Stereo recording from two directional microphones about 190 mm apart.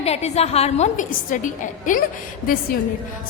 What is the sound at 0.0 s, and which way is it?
A woman's voice, 35° left (ahead or behind).